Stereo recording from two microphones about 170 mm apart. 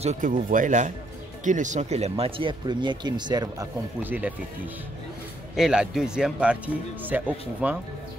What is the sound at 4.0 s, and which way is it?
Speech, 10° right (ahead or behind).